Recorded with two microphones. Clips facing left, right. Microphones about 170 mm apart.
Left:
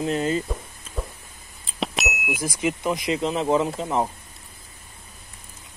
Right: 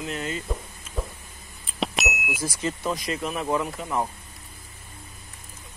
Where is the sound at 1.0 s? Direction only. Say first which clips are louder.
Even; centre (ahead or behind).